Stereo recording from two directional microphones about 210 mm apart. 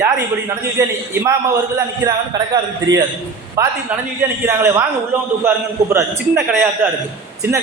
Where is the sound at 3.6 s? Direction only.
10° right (ahead or behind).